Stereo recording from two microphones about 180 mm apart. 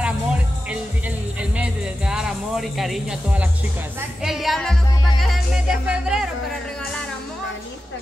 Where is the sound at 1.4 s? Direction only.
5° right (ahead or behind).